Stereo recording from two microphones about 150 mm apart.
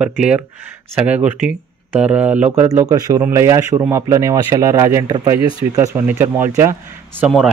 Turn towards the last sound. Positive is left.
turn(degrees=-20)  # may be behind; listen again after turning